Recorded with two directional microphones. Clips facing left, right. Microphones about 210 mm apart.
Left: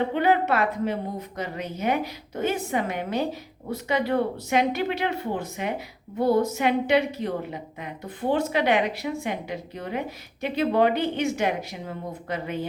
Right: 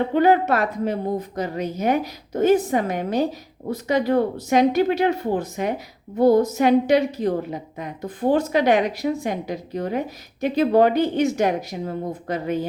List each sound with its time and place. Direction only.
0.1 s a woman's voice: 40° right (ahead or behind)